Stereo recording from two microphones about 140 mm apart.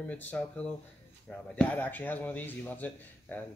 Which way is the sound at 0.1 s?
10° left (ahead or behind).